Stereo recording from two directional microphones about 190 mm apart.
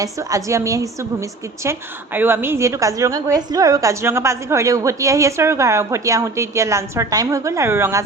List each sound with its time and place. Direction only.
0.0 s a woman's voice: 15° right (ahead or behind)